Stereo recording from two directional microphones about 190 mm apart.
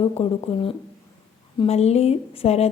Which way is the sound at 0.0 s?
30° left (ahead or behind).